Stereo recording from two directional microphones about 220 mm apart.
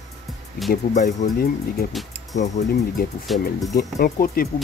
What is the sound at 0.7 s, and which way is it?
Speech, 35° left (ahead or behind).